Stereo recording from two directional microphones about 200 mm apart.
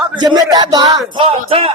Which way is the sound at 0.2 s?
20° right (ahead or behind).